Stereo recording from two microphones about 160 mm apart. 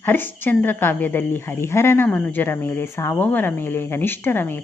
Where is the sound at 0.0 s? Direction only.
10° left (ahead or behind).